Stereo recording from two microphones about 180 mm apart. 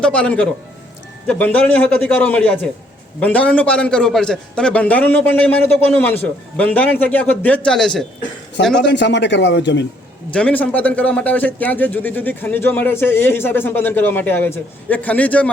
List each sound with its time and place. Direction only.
0.0 s a man's voice: 5° left (ahead or behind)
8.7 s speech: 75° left (ahead or behind)
10.3 s speech: 10° left (ahead or behind)